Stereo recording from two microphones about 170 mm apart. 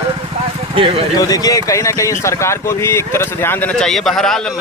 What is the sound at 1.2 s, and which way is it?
Speech, 20° left (ahead or behind).